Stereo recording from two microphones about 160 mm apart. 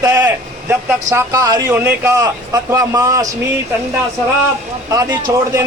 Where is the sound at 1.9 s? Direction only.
10° right (ahead or behind).